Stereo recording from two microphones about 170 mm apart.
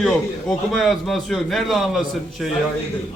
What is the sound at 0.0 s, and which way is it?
A man's voice, centre (ahead or behind).